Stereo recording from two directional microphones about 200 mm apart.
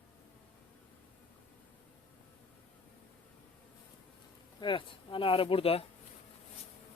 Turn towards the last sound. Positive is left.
turn(degrees=30)  # may be behind; listen again after turning